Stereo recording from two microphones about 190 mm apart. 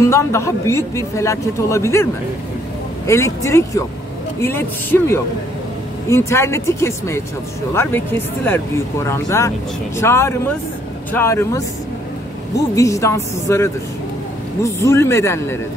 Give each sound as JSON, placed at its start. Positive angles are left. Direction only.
{"t": 0.0, "sound": "a man's voice", "side_deg": 15}
{"t": 3.1, "sound": "a man's voice", "side_deg": 15}